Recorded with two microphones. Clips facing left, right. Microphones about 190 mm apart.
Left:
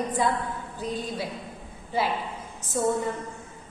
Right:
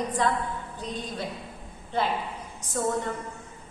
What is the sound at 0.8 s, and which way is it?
A woman's voice, 5° left (ahead or behind).